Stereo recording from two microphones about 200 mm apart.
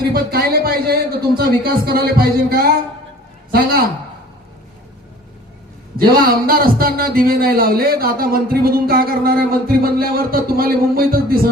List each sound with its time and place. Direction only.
0.1 s speech: 50° right (ahead or behind)
6.0 s a man's voice: 50° right (ahead or behind)